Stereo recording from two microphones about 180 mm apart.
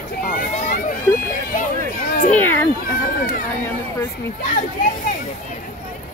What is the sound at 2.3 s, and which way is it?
Speech, 10° left (ahead or behind).